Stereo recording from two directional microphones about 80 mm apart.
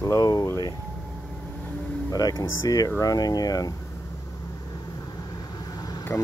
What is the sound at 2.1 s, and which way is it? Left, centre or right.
Speech, left.